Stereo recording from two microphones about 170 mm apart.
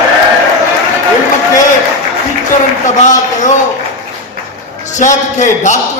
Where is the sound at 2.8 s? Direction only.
45° left (ahead or behind).